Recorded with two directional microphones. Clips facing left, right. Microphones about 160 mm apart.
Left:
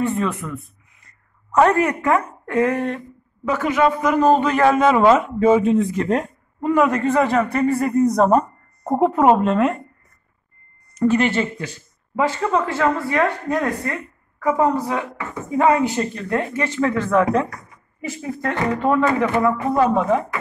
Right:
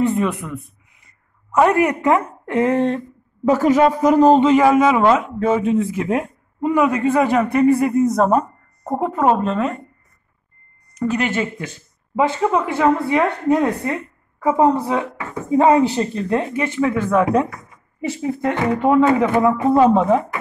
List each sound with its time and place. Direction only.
0.0 s speech: 20° right (ahead or behind)
1.5 s speech: 10° right (ahead or behind); by 3.0 s 25° right (ahead or behind)
3.4 s speech: 40° right (ahead or behind)
4.6 s a man's voice: 5° right (ahead or behind)
11.0 s a man's voice: centre (ahead or behind)
12.2 s speech: 15° right (ahead or behind)
16.5 s speech: 10° right (ahead or behind)